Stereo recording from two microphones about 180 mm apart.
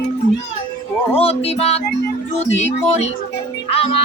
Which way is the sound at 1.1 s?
35° left (ahead or behind).